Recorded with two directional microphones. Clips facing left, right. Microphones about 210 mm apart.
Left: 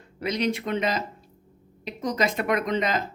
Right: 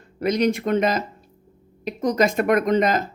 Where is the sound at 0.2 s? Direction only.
45° right (ahead or behind).